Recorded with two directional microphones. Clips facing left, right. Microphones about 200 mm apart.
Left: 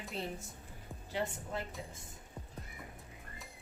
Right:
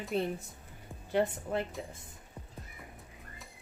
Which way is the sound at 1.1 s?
60° right (ahead or behind).